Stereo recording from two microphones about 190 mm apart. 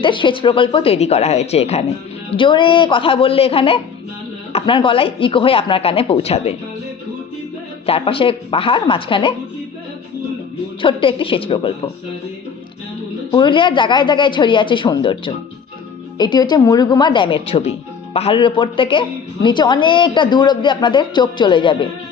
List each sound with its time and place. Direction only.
0.0 s a woman's voice: 25° left (ahead or behind)
7.9 s a woman's voice: 30° left (ahead or behind)
10.8 s a woman's voice: 30° left (ahead or behind)
13.3 s a woman's voice: 25° left (ahead or behind)